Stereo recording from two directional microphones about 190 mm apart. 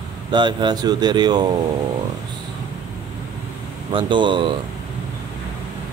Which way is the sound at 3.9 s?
25° right (ahead or behind).